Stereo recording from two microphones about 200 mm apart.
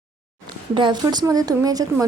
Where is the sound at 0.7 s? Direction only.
25° right (ahead or behind).